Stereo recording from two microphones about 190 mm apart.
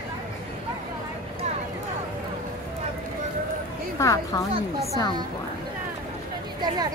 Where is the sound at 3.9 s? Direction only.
15° left (ahead or behind).